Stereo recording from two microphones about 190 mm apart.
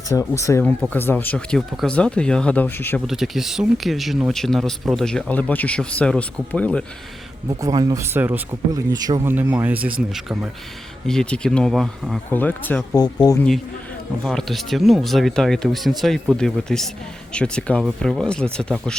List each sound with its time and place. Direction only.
0.1 s speech: 15° left (ahead or behind)
3.1 s speech: centre (ahead or behind)
7.6 s speech: 20° right (ahead or behind); by 13.0 s 10° left (ahead or behind)
13.2 s speech: 20° left (ahead or behind)
14.3 s speech: centre (ahead or behind)